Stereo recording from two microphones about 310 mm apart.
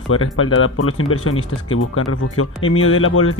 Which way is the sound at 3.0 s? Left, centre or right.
Left.